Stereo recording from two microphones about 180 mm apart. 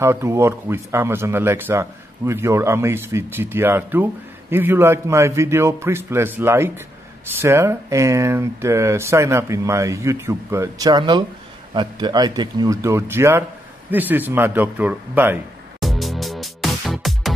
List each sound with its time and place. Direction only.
0.0 s speech: 15° right (ahead or behind)
15.8 s music: centre (ahead or behind)